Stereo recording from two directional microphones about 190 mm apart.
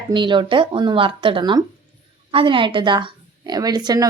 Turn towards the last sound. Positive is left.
turn(degrees=-20)  # may be behind; listen again after turning